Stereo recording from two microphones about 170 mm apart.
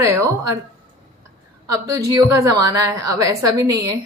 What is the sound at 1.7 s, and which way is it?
A woman's voice, 20° right (ahead or behind).